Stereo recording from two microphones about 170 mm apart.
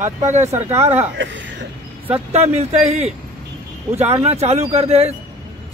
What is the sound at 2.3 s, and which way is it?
A man's voice, 40° right (ahead or behind).